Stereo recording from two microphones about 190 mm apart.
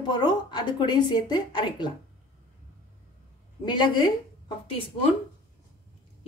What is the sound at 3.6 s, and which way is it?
Speech, 25° left (ahead or behind).